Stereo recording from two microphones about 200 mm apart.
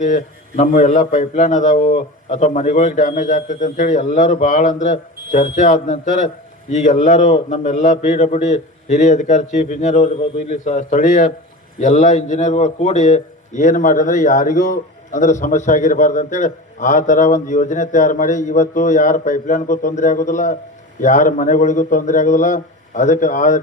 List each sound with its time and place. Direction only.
0.0 s a man's voice: 40° left (ahead or behind)